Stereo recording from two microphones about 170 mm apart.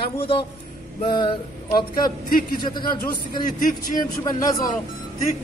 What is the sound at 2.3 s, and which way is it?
Speech, 55° left (ahead or behind).